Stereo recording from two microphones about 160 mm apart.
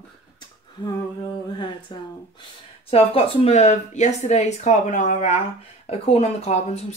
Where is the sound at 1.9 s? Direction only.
30° left (ahead or behind).